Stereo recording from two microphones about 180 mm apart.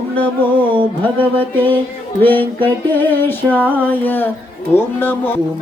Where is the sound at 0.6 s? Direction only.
30° right (ahead or behind).